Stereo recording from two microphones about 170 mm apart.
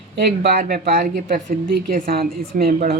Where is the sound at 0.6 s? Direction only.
60° right (ahead or behind).